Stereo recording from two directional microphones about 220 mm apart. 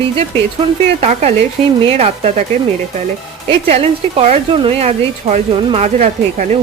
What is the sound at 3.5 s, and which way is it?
Speech, 25° right (ahead or behind).